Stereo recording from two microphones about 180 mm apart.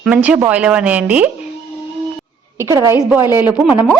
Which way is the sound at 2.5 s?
15° right (ahead or behind).